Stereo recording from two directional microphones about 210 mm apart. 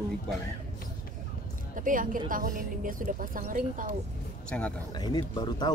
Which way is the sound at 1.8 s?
40° right (ahead or behind).